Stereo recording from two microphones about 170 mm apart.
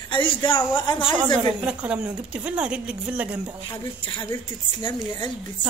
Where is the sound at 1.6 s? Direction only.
5° right (ahead or behind).